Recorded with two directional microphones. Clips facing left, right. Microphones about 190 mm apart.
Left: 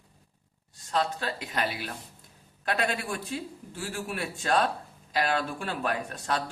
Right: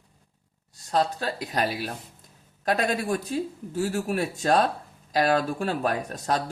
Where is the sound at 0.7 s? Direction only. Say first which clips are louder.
Right 4 dB; 40° right (ahead or behind).